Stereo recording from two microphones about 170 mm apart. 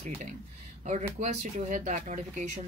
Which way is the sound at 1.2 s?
45° right (ahead or behind).